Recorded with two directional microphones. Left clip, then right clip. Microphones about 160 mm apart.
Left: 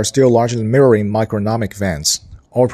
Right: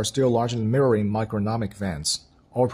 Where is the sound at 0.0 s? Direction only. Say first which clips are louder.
Left 9 dB; 20° left (ahead or behind).